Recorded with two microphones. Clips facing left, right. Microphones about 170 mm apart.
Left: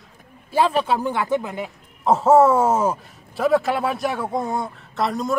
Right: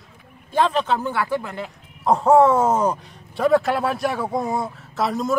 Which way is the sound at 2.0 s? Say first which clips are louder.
Even; 5° left (ahead or behind).